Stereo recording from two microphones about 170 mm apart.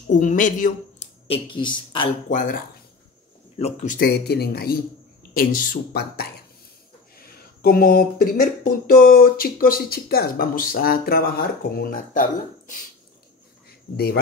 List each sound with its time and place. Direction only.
0.1 s speech: 45° left (ahead or behind)
1.2 s speech: 30° left (ahead or behind)
2.2 s speech: 50° left (ahead or behind)
3.5 s speech: 40° left (ahead or behind); by 6.2 s 60° left (ahead or behind)
7.6 s speech: 55° left (ahead or behind)
13.9 s speech: 65° left (ahead or behind)